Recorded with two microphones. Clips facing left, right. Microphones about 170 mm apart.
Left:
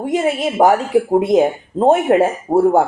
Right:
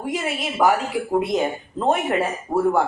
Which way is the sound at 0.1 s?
45° left (ahead or behind).